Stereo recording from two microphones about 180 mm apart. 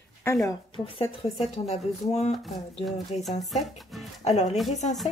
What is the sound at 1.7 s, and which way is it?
Speech, 35° left (ahead or behind).